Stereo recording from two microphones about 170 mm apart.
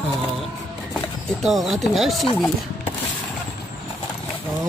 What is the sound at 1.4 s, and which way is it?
Speech, centre (ahead or behind).